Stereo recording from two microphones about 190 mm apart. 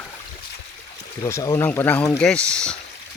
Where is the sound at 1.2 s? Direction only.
20° left (ahead or behind).